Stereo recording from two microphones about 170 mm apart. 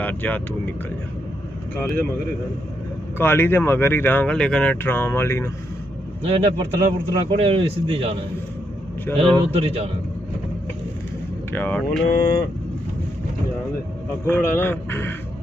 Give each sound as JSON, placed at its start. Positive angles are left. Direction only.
{"t": 0.0, "sound": "speech", "side_deg": 10}
{"t": 3.2, "sound": "speech", "side_deg": 15}
{"t": 6.2, "sound": "a man's voice", "side_deg": -35}
{"t": 11.5, "sound": "speech", "side_deg": 10}
{"t": 14.2, "sound": "speech", "side_deg": 10}